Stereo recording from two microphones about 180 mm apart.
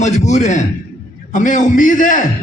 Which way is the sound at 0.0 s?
40° left (ahead or behind).